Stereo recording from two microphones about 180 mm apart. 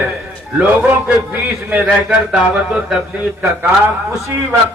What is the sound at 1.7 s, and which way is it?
A man's voice, 5° right (ahead or behind).